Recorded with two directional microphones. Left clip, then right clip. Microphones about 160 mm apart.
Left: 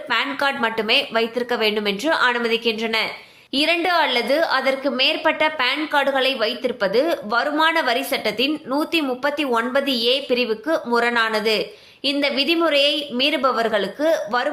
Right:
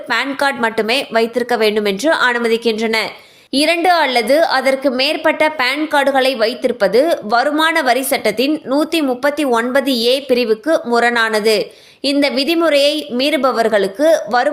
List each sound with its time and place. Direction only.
0.1 s a woman's voice: 45° right (ahead or behind)